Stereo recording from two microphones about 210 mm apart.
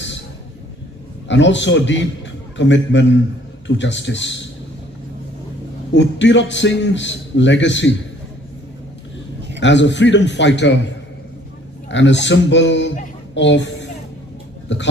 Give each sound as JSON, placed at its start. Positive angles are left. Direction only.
{"t": 1.3, "sound": "a man's voice", "side_deg": 60}
{"t": 5.9, "sound": "a man's voice", "side_deg": 60}
{"t": 9.6, "sound": "a man's voice", "side_deg": 60}
{"t": 11.9, "sound": "a man's voice", "side_deg": 60}